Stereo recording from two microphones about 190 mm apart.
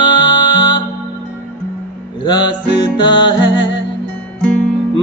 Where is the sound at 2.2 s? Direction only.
25° left (ahead or behind).